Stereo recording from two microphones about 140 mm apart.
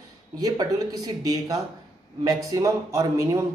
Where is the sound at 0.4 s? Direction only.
25° right (ahead or behind).